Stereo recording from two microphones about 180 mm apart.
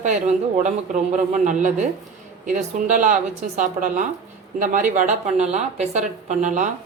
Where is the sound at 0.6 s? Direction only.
45° right (ahead or behind).